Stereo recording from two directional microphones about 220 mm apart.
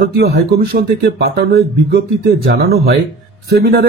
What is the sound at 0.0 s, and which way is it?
Speech, 45° right (ahead or behind).